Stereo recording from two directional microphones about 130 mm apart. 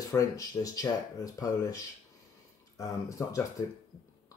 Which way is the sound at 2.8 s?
25° left (ahead or behind).